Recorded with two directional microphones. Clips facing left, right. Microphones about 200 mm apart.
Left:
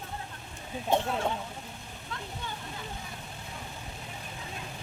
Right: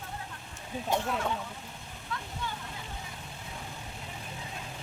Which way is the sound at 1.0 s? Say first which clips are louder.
Left 1 dB; 30° left (ahead or behind).